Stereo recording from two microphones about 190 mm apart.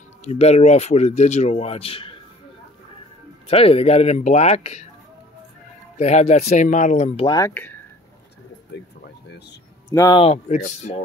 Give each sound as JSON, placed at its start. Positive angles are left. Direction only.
{"t": 0.2, "sound": "speech", "side_deg": 35}
{"t": 3.4, "sound": "speech", "side_deg": 30}
{"t": 5.9, "sound": "speech", "side_deg": 35}
{"t": 7.3, "sound": "speech", "side_deg": 10}
{"t": 8.7, "sound": "speech", "side_deg": 65}
{"t": 9.8, "sound": "speech", "side_deg": 15}
{"t": 10.1, "sound": "speech", "side_deg": 35}